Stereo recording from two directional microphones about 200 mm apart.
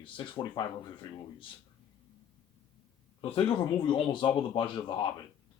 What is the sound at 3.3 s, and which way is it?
Speech, 25° left (ahead or behind).